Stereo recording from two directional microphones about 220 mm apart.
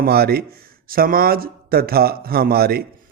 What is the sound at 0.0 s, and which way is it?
Speech, 45° right (ahead or behind).